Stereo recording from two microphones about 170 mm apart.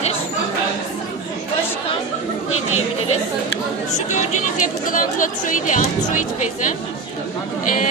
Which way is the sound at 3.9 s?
45° left (ahead or behind).